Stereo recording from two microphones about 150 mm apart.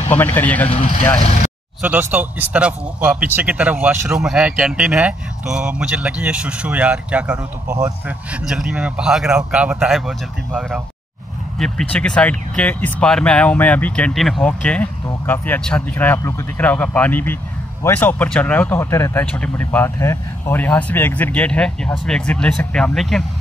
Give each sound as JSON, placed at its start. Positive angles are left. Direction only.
{"t": 0.1, "sound": "speech", "side_deg": 10}
{"t": 1.8, "sound": "speech", "side_deg": -10}
{"t": 7.6, "sound": "speech", "side_deg": -20}
{"t": 8.3, "sound": "speech", "side_deg": -5}